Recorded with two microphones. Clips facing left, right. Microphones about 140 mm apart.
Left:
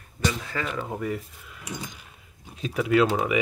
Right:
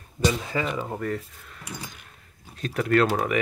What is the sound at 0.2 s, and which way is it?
Speech, 20° right (ahead or behind).